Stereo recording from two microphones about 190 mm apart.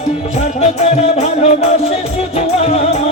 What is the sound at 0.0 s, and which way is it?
Music, 35° left (ahead or behind).